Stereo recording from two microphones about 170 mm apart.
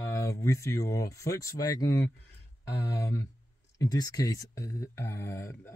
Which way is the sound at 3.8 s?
20° left (ahead or behind).